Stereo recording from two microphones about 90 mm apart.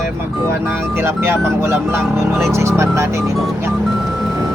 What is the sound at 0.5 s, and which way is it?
Speech, 25° right (ahead or behind).